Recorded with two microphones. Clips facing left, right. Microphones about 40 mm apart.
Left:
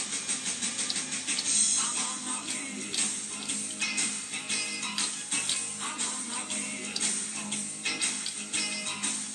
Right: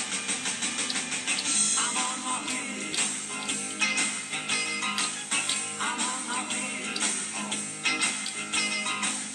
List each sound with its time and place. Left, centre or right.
0.3 s vehicle: right
1.5 s music: right
3.8 s music: right